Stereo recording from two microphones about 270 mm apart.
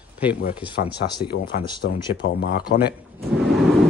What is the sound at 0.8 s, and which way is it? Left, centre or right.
Speech, left.